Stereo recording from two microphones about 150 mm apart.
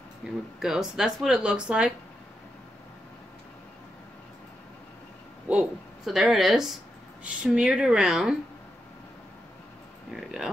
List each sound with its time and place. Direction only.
0.2 s speech: centre (ahead or behind)
5.5 s speech: 5° right (ahead or behind)
10.2 s speech: centre (ahead or behind)